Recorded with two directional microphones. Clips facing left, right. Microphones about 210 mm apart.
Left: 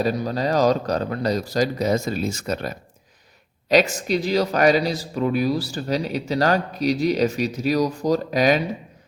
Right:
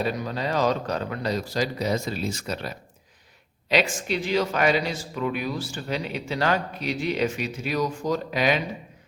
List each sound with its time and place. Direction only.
0.0 s speech: 40° left (ahead or behind)